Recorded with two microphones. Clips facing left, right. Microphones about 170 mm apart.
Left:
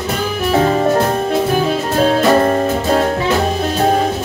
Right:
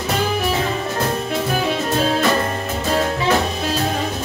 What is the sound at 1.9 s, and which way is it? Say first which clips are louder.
Music: left 7 dB; 50° left (ahead or behind).